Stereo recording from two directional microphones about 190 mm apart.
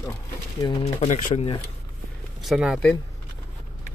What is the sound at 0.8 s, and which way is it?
Speech, 40° left (ahead or behind).